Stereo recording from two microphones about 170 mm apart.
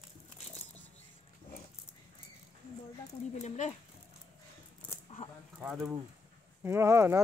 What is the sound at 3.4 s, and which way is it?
Speech, 45° left (ahead or behind).